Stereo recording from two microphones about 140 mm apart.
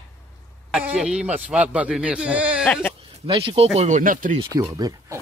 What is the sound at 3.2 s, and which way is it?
Speech, 40° right (ahead or behind).